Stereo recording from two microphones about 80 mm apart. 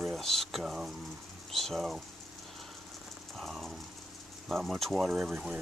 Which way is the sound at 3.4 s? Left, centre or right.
Centre.